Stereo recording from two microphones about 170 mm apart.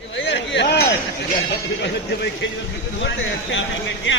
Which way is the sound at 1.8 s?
85° left.